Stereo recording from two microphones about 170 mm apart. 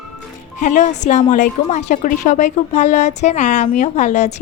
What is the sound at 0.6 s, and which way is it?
A woman's voice, 45° left (ahead or behind).